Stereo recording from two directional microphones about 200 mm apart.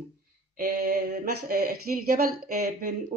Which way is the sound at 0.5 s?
50° right (ahead or behind).